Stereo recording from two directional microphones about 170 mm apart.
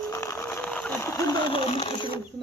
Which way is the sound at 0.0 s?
15° left (ahead or behind).